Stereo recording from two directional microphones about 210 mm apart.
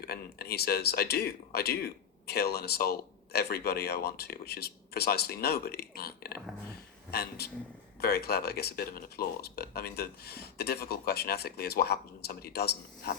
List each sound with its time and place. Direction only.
0.0 s speech: 45° left (ahead or behind)